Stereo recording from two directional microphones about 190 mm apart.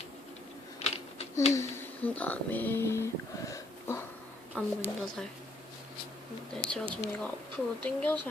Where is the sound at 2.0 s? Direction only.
10° left (ahead or behind).